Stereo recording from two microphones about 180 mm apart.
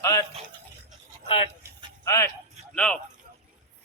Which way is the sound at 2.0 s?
15° left (ahead or behind).